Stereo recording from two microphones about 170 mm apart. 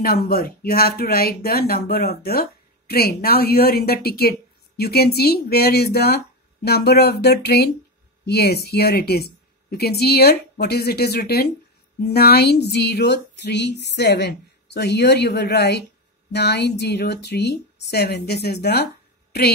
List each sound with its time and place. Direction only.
0.0 s a woman's voice: 65° left (ahead or behind)